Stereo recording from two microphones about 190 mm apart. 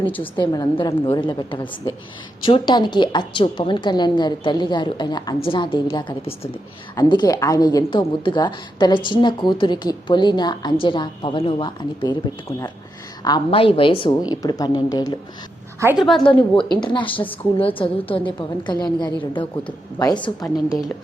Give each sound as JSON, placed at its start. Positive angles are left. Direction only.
{"t": 0.0, "sound": "a woman's voice", "side_deg": 10}
{"t": 0.3, "sound": "a woman's voice", "side_deg": 20}
{"t": 15.8, "sound": "a woman's voice", "side_deg": -15}
{"t": 16.2, "sound": "a woman's voice", "side_deg": 25}